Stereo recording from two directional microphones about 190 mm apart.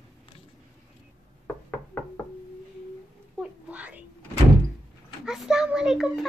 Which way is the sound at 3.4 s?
5° right (ahead or behind).